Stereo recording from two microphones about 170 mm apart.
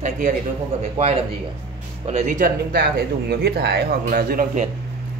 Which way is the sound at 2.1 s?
45° right (ahead or behind).